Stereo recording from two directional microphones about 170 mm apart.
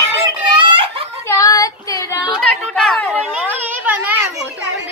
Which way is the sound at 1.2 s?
15° left (ahead or behind).